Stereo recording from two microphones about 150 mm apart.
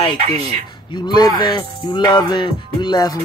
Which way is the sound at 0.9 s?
30° left (ahead or behind).